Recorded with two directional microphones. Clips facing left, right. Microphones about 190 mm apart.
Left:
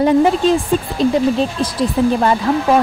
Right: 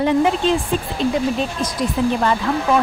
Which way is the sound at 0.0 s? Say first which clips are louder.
Left 4 dB; 40° left (ahead or behind).